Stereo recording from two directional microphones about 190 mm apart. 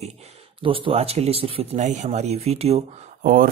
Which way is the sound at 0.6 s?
25° right (ahead or behind).